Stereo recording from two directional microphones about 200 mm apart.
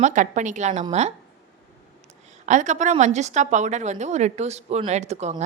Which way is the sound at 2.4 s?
35° right (ahead or behind).